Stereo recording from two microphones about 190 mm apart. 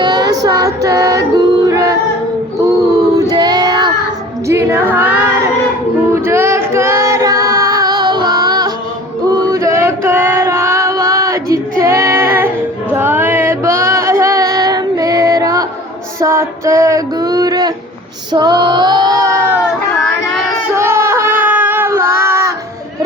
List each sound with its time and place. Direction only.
0.0 s music: 20° right (ahead or behind)
2.6 s child singing: 20° right (ahead or behind)
4.4 s speech: 15° right (ahead or behind)
6.1 s music: 15° right (ahead or behind)
9.3 s female singing: 15° right (ahead or behind)
16.2 s music: 15° right (ahead or behind)
18.3 s female singing: 25° right (ahead or behind)
20.7 s child singing: 15° right (ahead or behind)